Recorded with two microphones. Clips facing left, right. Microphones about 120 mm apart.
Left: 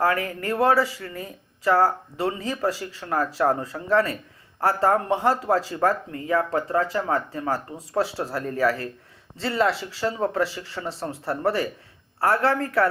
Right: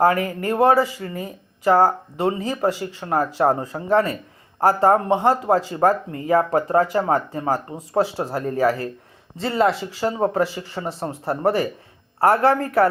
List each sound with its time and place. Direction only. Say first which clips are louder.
0.0 s speech: right 5 dB; 25° right (ahead or behind)